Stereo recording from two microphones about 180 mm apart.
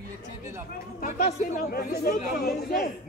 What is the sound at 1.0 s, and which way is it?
Speech, 50° left (ahead or behind).